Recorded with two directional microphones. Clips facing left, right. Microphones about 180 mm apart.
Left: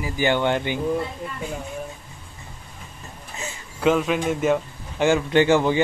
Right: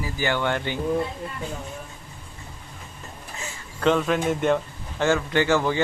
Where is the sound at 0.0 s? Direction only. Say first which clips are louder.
Left 4 dB; 20° left (ahead or behind).